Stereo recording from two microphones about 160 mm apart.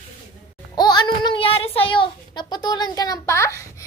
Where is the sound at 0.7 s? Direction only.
25° left (ahead or behind).